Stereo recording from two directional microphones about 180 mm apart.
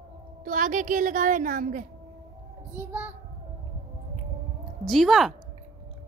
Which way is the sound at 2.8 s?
10° right (ahead or behind).